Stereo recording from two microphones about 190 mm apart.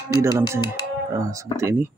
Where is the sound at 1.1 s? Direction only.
15° right (ahead or behind).